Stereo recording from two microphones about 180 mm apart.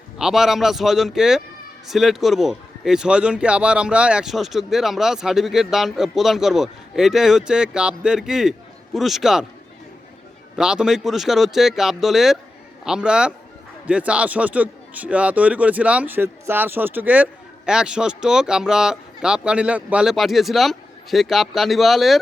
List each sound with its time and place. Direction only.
0.2 s speech: 5° right (ahead or behind)
10.6 s a man's voice: 5° right (ahead or behind)